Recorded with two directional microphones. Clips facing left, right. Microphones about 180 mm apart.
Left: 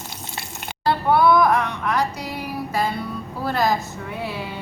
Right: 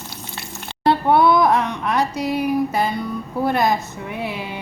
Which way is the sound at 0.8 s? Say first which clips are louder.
Right 3 dB; 20° right (ahead or behind).